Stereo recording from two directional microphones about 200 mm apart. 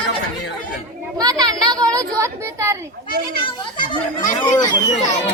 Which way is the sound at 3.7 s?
25° left (ahead or behind).